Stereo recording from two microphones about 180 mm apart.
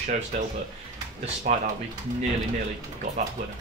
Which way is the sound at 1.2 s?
45° right (ahead or behind).